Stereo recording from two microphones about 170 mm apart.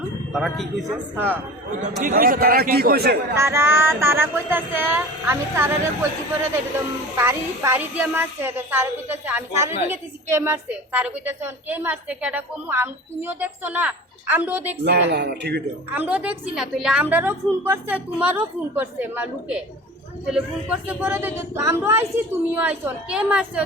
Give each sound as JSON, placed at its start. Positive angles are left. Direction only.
{"t": 0.3, "sound": "a man's voice", "side_deg": 0}
{"t": 1.1, "sound": "a woman's voice", "side_deg": -10}
{"t": 1.8, "sound": "a man's voice", "side_deg": -55}
{"t": 3.3, "sound": "a woman's voice", "side_deg": -15}
{"t": 7.2, "sound": "a woman's voice", "side_deg": -15}
{"t": 14.8, "sound": "a man's voice", "side_deg": -70}
{"t": 16.0, "sound": "a woman's voice", "side_deg": -10}